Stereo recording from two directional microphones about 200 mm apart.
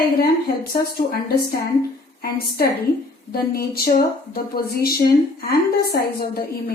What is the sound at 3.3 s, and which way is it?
A woman's voice, 50° left (ahead or behind).